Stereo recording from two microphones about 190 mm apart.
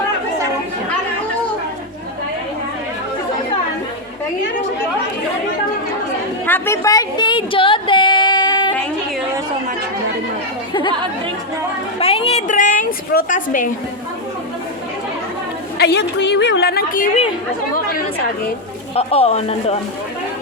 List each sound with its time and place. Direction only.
6.4 s a sound: 10° left (ahead or behind)
11.9 s a woman's voice: 30° left (ahead or behind)
15.8 s a woman's voice: 60° left (ahead or behind); by 17.2 s 45° left (ahead or behind)
18.9 s speech: 30° left (ahead or behind)